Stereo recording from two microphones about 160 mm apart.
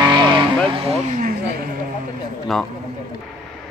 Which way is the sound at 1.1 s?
60° right (ahead or behind).